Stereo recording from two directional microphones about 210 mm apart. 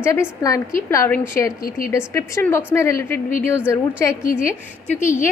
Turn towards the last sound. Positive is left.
turn(degrees=10)  # may be behind; listen again after turning